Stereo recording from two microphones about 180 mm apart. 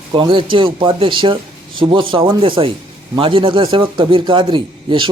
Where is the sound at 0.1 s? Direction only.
25° right (ahead or behind).